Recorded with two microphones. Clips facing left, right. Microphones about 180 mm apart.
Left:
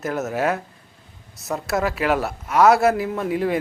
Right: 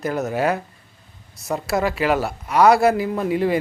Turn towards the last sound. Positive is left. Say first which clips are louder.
# right 2 dB
turn(degrees=0)  # may be behind; listen again after turning